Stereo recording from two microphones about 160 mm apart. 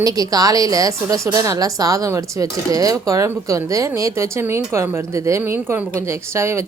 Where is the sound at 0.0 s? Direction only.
25° right (ahead or behind).